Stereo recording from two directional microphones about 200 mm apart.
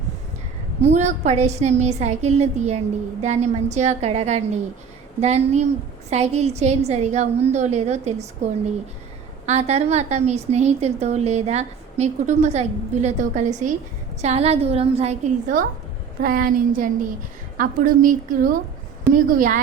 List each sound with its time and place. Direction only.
0.8 s a woman's voice: 35° right (ahead or behind)
9.5 s a woman's voice: 35° right (ahead or behind)